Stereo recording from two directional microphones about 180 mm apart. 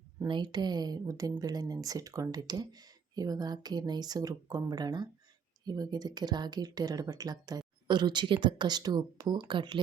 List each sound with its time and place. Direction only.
0.3 s speech: 25° right (ahead or behind)